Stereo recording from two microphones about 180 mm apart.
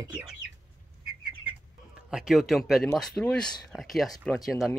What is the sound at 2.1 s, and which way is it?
Speech, 5° right (ahead or behind).